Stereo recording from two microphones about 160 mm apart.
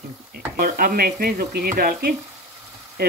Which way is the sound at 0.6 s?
65° right (ahead or behind).